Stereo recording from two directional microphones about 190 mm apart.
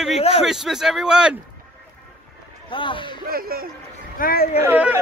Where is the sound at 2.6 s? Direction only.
25° left (ahead or behind).